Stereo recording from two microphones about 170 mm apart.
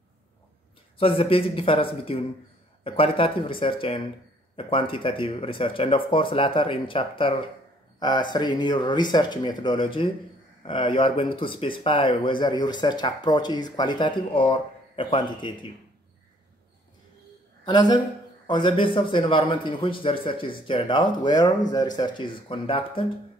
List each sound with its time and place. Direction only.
0.9 s speech: 35° left (ahead or behind)
17.6 s speech: 25° left (ahead or behind)